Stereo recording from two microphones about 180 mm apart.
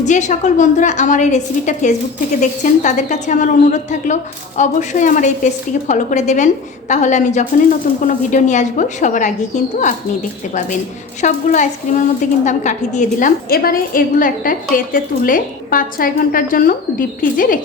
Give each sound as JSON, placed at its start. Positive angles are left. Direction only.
{"t": 0.0, "sound": "a woman's voice", "side_deg": 40}
{"t": 11.2, "sound": "a woman's voice", "side_deg": 45}